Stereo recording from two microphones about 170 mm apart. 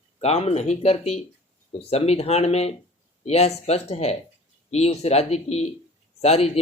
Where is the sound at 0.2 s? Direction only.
40° left (ahead or behind).